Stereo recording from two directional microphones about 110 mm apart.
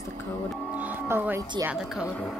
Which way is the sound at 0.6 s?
15° right (ahead or behind).